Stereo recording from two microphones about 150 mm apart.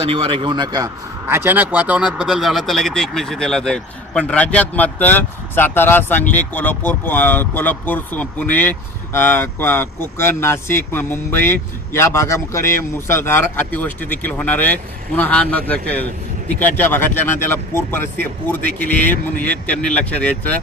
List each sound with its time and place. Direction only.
0.0 s speech: 40° right (ahead or behind)
1.3 s speech: 15° right (ahead or behind); by 20.3 s 10° left (ahead or behind)